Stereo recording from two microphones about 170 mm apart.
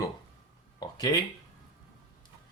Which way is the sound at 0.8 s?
25° left (ahead or behind).